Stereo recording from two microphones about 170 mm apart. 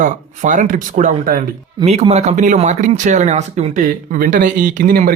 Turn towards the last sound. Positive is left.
turn(degrees=-50)  # may be behind; listen again after turning